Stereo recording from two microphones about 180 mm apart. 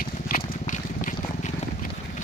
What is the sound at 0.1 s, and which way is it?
Vehicle, 45° left (ahead or behind).